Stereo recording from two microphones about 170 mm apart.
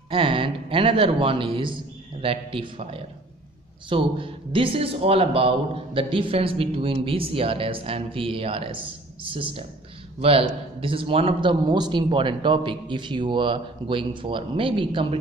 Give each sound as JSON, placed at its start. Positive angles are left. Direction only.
{"t": 0.1, "sound": "speech", "side_deg": -30}
{"t": 10.8, "sound": "a man's voice", "side_deg": -30}